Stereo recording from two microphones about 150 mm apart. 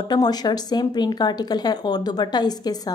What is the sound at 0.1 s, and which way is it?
Speech, 25° left (ahead or behind).